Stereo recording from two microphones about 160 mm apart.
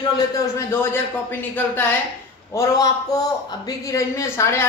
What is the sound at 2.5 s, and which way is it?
Speech, 15° left (ahead or behind).